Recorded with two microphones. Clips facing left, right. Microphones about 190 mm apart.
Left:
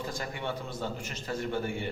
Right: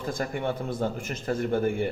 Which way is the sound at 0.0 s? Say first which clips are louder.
Right 6 dB; 50° right (ahead or behind).